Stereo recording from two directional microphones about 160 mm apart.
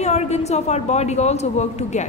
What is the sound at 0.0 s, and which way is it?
A man's voice, 45° left (ahead or behind).